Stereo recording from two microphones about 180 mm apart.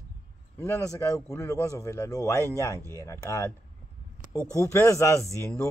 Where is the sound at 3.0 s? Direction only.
15° left (ahead or behind).